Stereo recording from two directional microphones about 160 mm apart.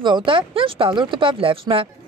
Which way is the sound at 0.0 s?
30° right (ahead or behind).